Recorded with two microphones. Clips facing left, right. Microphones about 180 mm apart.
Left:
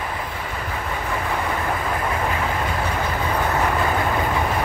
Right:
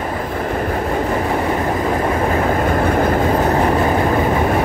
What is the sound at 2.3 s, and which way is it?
Train, 45° right (ahead or behind).